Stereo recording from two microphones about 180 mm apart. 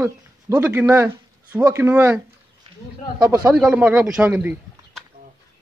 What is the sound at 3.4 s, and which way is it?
Speech, 5° right (ahead or behind).